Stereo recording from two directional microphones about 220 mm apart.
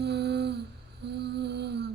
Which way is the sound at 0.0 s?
50° right (ahead or behind).